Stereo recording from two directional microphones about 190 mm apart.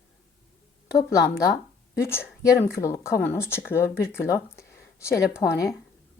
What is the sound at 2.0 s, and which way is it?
A woman's voice, 15° left (ahead or behind).